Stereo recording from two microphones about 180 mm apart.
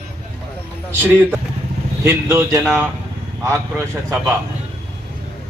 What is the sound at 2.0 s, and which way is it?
Speech, 15° right (ahead or behind).